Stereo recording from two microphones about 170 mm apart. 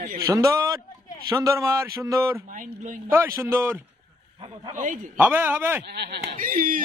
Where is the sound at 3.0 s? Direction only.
15° right (ahead or behind).